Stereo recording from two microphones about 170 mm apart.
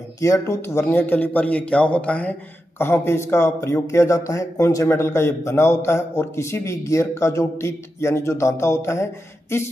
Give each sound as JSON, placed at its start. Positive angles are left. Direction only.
{"t": 0.2, "sound": "speech", "side_deg": 15}